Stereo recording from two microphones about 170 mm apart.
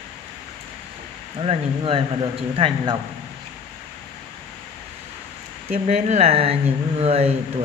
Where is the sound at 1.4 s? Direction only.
35° right (ahead or behind).